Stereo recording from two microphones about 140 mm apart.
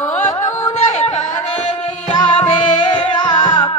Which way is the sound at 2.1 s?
35° left (ahead or behind).